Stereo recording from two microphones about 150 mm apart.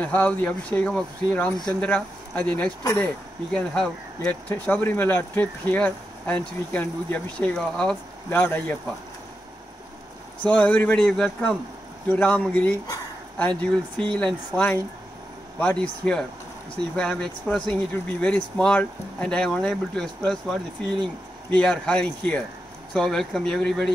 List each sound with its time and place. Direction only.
0.0 s speech: 10° left (ahead or behind)
2.8 s speech: 20° left (ahead or behind)
3.5 s speech: 5° left (ahead or behind)
10.4 s speech: 10° left (ahead or behind)